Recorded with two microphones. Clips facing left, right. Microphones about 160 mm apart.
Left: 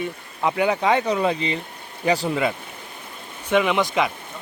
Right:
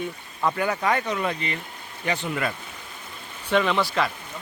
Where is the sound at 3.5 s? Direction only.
15° left (ahead or behind).